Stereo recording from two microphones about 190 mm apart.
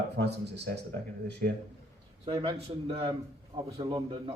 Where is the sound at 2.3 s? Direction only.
30° right (ahead or behind).